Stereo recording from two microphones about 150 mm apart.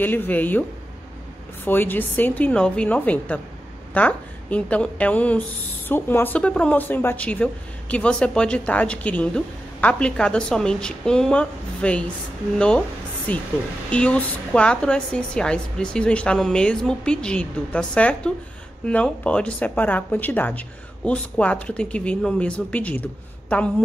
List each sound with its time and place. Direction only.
0.0 s a woman's voice: 15° left (ahead or behind)